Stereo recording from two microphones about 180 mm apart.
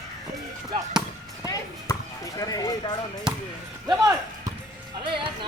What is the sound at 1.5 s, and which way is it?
Speech, 20° left (ahead or behind).